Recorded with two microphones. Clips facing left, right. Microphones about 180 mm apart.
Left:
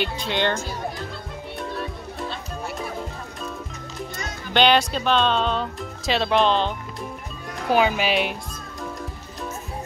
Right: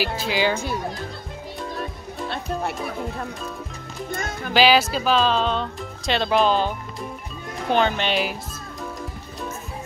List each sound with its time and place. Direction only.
0.0 s speech: 5° right (ahead or behind)
1.6 s music: centre (ahead or behind)
2.2 s music: 65° right (ahead or behind)
4.1 s music: 55° right (ahead or behind)
4.6 s speech: 5° right (ahead or behind)
7.7 s speech: 5° left (ahead or behind)